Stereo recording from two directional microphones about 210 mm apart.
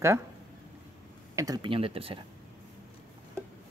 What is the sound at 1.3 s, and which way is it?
Speech, 15° right (ahead or behind).